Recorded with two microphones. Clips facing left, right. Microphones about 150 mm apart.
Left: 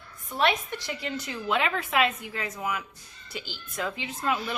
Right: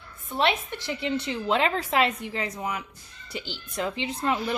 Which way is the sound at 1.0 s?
30° right (ahead or behind).